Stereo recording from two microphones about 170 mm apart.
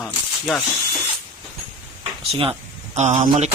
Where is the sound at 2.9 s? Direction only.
40° right (ahead or behind).